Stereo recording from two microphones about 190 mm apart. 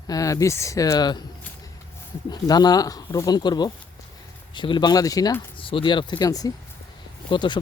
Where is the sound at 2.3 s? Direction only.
20° left (ahead or behind).